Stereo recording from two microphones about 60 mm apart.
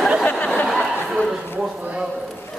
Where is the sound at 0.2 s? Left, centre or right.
Left.